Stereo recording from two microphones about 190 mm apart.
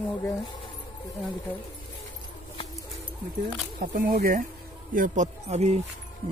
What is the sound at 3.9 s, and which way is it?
Speech, 45° right (ahead or behind).